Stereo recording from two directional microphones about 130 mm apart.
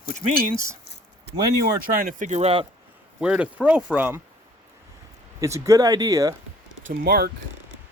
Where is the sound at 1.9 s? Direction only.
90° right; by 2.6 s 50° right (ahead or behind).